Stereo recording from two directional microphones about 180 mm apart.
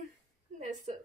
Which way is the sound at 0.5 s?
45° right (ahead or behind).